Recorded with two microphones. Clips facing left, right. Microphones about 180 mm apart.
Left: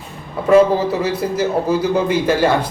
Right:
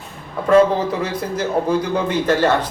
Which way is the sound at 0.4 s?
5° left (ahead or behind).